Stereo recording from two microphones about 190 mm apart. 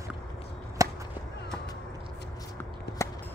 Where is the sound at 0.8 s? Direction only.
15° right (ahead or behind).